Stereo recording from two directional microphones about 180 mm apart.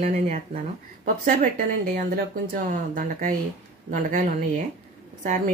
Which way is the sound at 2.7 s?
45° right (ahead or behind).